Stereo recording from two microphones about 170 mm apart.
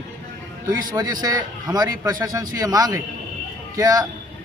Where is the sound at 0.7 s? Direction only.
20° right (ahead or behind).